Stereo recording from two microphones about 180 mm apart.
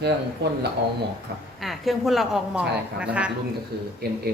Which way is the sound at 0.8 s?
60° right (ahead or behind).